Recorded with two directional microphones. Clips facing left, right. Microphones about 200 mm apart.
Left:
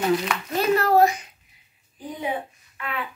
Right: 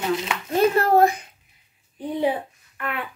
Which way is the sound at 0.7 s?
50° right (ahead or behind).